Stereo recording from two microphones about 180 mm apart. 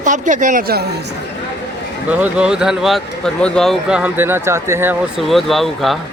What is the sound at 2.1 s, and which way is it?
Speech, 10° right (ahead or behind).